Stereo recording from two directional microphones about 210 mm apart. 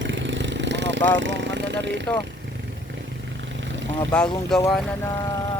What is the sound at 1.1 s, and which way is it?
Speech, 60° right (ahead or behind).